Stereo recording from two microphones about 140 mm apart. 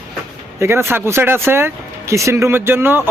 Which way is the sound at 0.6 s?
15° right (ahead or behind).